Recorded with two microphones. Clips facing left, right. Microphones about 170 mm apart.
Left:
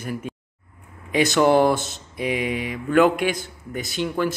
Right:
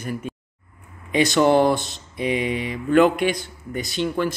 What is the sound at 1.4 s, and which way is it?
Speech, 10° left (ahead or behind).